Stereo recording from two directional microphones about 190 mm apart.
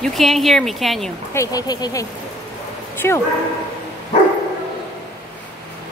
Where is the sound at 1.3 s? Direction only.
15° left (ahead or behind).